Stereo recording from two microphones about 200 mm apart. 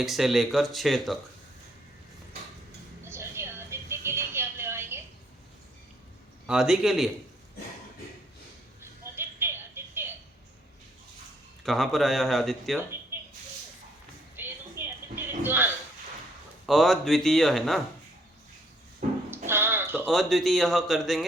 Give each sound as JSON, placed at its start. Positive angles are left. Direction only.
{"t": 0.0, "sound": "speech", "side_deg": 0}
{"t": 3.0, "sound": "music", "side_deg": -10}
{"t": 6.5, "sound": "speech", "side_deg": -5}
{"t": 9.1, "sound": "music", "side_deg": -10}
{"t": 11.6, "sound": "speech", "side_deg": 0}
{"t": 14.3, "sound": "a sound", "side_deg": -10}
{"t": 16.6, "sound": "speech", "side_deg": 0}
{"t": 19.0, "sound": "a sound", "side_deg": -40}
{"t": 19.5, "sound": "a sound", "side_deg": -10}
{"t": 20.1, "sound": "speech", "side_deg": 0}